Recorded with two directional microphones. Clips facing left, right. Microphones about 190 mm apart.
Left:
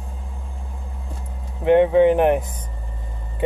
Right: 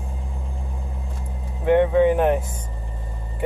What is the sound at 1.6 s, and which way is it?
Speech, 20° left (ahead or behind).